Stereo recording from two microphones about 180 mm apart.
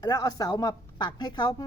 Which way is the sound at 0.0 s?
20° left (ahead or behind).